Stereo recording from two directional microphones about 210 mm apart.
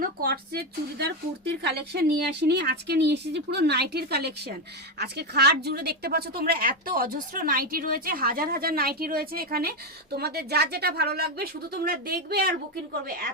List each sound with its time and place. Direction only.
0.0 s speech: 45° right (ahead or behind)